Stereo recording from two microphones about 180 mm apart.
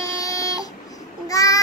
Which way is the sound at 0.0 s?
20° left (ahead or behind).